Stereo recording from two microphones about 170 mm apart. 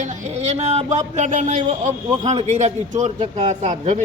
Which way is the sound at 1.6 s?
30° right (ahead or behind).